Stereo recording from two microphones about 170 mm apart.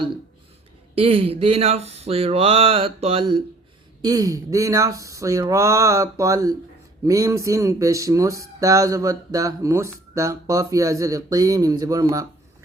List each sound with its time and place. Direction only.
0.9 s speech: 35° right (ahead or behind)
4.0 s speech: 20° right (ahead or behind)